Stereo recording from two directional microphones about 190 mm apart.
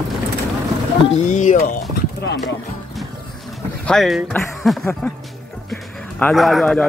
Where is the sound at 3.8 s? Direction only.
Centre (ahead or behind).